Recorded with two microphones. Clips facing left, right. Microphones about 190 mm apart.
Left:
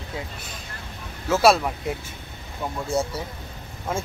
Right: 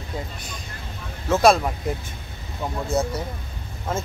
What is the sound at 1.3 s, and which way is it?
Speech, 5° left (ahead or behind).